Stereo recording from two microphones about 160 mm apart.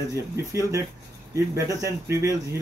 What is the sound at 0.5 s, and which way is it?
Speech, 20° right (ahead or behind).